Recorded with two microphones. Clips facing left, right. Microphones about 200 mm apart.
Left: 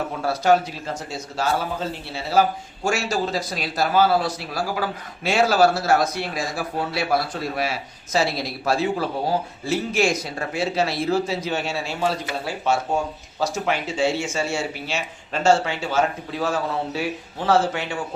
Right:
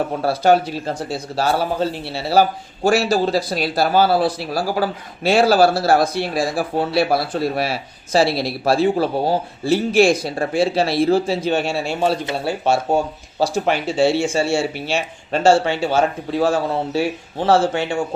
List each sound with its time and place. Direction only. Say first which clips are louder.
0.2 s speech: right 3 dB; 30° right (ahead or behind)